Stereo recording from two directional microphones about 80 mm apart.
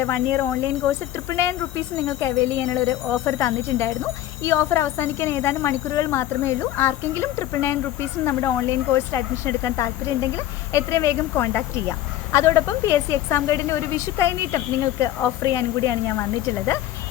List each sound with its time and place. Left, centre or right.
0.0 s speech: left